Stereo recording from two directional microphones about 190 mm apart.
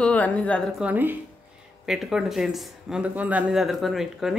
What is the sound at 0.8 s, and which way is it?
Speech, 10° right (ahead or behind).